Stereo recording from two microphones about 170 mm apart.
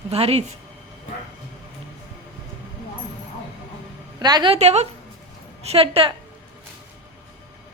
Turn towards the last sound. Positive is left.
turn(degrees=-30)  # may be behind; listen again after turning